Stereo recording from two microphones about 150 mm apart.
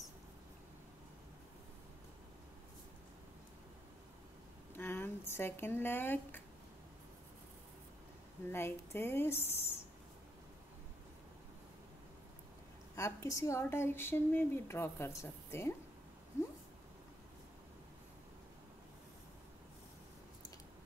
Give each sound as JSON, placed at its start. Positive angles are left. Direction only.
{"t": 4.7, "sound": "speech", "side_deg": 15}
{"t": 8.5, "sound": "speech", "side_deg": 15}
{"t": 12.9, "sound": "speech", "side_deg": 20}